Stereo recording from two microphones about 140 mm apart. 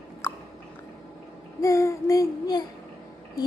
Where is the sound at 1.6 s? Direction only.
20° left (ahead or behind).